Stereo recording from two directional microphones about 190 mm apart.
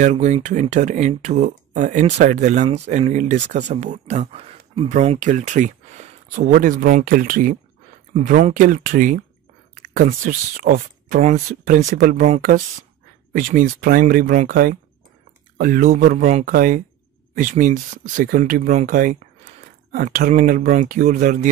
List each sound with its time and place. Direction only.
0.0 s speech: 35° right (ahead or behind)